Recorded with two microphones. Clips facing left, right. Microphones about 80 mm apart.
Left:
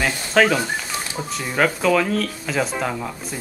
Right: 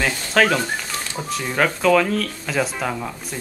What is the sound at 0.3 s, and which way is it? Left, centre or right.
Speech, centre.